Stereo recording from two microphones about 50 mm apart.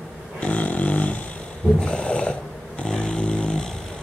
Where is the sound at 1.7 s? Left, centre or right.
Centre.